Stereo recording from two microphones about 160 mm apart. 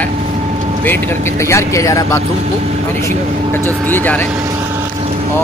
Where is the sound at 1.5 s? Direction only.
20° left (ahead or behind).